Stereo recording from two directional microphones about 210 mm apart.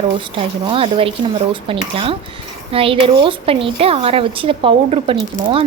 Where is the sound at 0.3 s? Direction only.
25° right (ahead or behind).